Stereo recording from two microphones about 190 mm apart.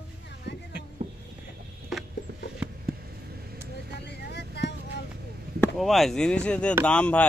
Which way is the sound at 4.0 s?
60° left (ahead or behind).